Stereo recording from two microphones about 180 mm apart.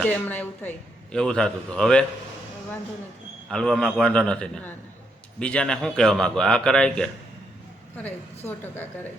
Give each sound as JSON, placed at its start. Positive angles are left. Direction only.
{"t": 0.0, "sound": "a man's voice", "side_deg": 10}
{"t": 3.5, "sound": "a man's voice", "side_deg": 5}
{"t": 8.4, "sound": "speech", "side_deg": 10}